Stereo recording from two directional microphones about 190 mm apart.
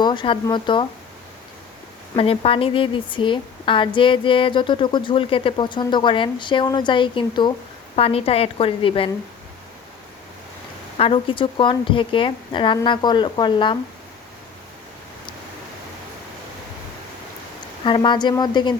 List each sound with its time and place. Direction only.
0.0 s a woman's voice: 25° left (ahead or behind)
2.1 s a woman's voice: 30° left (ahead or behind)
10.9 s a woman's voice: 30° left (ahead or behind)
17.8 s a woman's voice: 25° left (ahead or behind)